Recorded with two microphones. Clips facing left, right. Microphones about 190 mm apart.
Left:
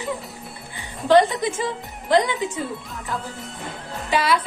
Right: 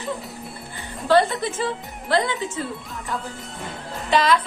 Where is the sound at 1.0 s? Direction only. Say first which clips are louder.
Left 2 dB; 15° left (ahead or behind).